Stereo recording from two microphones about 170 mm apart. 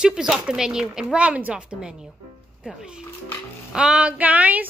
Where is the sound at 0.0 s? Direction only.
5° right (ahead or behind).